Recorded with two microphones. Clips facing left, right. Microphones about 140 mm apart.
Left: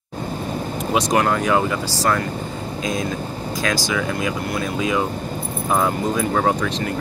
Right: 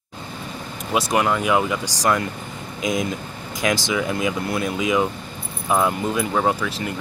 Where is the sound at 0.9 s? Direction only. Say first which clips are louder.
Left 1 dB; 5° right (ahead or behind).